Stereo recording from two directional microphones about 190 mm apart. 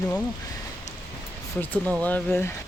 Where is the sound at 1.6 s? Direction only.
10° left (ahead or behind).